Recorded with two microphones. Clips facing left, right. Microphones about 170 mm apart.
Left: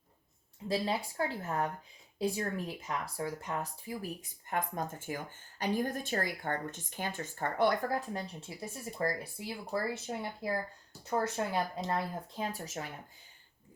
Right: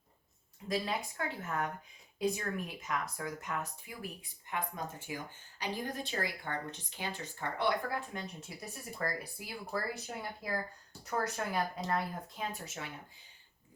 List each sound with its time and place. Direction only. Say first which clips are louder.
0.7 s speech: left 2 dB; 30° left (ahead or behind)